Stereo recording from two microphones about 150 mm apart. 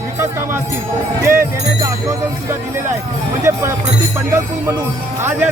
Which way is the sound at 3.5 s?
20° right (ahead or behind).